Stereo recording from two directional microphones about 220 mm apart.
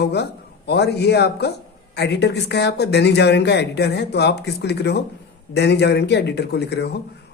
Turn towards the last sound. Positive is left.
turn(degrees=50)  # may be behind; listen again after turning